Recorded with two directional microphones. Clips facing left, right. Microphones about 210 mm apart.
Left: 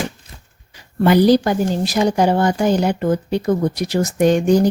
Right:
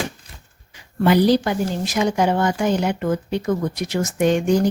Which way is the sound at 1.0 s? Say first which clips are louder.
Left 3 dB; 45° left (ahead or behind).